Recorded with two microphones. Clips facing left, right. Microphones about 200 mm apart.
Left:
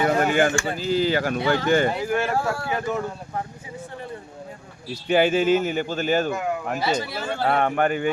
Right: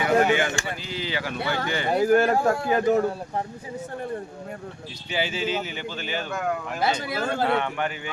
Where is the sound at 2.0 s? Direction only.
45° right (ahead or behind).